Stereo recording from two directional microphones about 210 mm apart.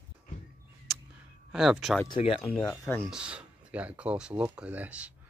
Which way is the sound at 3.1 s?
5° right (ahead or behind).